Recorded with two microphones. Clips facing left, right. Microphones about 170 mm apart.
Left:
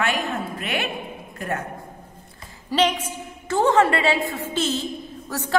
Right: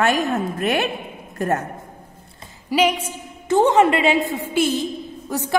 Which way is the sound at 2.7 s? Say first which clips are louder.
Right 2 dB; 10° right (ahead or behind).